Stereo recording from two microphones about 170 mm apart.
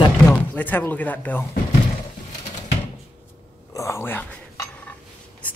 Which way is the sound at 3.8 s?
15° left (ahead or behind).